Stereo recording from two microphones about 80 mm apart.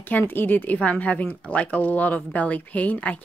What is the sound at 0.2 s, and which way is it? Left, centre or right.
Speech, left.